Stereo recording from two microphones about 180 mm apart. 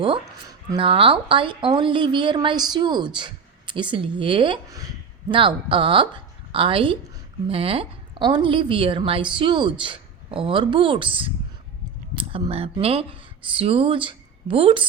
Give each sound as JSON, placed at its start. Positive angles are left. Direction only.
{"t": 0.8, "sound": "a woman's voice", "side_deg": -30}